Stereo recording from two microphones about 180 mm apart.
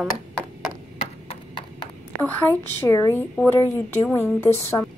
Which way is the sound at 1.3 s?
25° left (ahead or behind).